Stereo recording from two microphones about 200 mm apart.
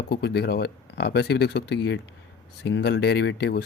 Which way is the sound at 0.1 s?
55° left (ahead or behind).